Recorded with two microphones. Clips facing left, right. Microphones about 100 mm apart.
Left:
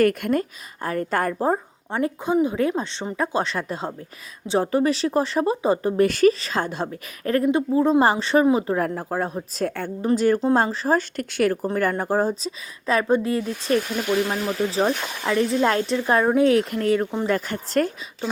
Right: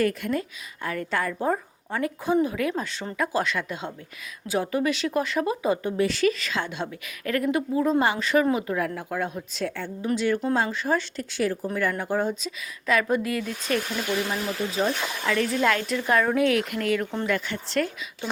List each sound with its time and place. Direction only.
0.0 s a woman's voice: 55° left (ahead or behind)
1.4 s speech: 25° left (ahead or behind)
6.0 s a woman's voice: 50° left (ahead or behind)
6.4 s a woman's voice: 40° left (ahead or behind)
11.2 s speech: 60° left (ahead or behind)
11.7 s a woman's voice: 45° left (ahead or behind)